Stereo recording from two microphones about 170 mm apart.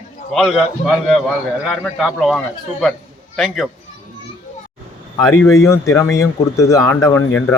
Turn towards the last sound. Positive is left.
turn(degrees=10)  # may be behind; listen again after turning